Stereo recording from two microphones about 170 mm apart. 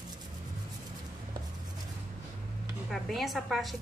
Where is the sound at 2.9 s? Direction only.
Centre (ahead or behind).